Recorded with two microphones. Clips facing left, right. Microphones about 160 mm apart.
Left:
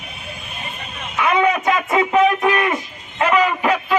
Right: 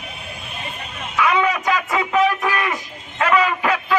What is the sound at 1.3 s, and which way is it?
A man's voice, 30° left (ahead or behind).